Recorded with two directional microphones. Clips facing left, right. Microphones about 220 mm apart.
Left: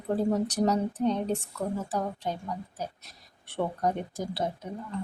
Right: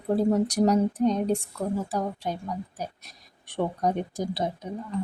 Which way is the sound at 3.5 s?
15° right (ahead or behind).